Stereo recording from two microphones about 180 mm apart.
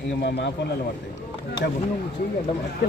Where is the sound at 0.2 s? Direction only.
70° left (ahead or behind).